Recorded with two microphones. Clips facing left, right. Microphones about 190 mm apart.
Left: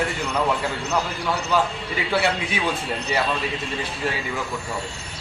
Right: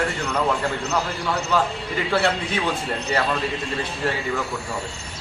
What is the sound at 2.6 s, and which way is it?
Speech, 10° left (ahead or behind).